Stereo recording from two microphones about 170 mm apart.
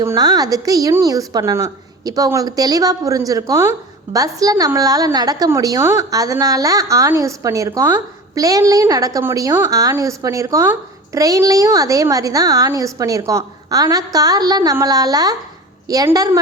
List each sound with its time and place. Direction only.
0.0 s a woman's voice: 20° right (ahead or behind)